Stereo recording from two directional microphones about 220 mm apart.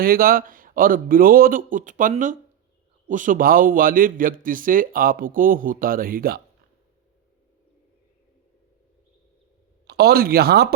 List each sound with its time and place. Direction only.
0.0 s speech: 40° right (ahead or behind)
9.8 s speech: 50° right (ahead or behind)